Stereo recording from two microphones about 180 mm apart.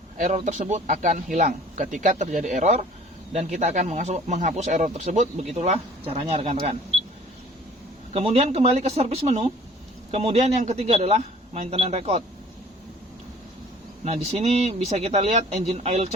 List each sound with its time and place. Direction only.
0.2 s speech: 45° right (ahead or behind)
8.1 s speech: 35° right (ahead or behind)
14.0 s speech: 35° right (ahead or behind)